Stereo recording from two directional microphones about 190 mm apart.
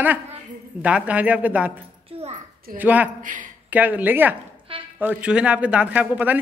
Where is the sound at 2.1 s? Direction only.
30° right (ahead or behind).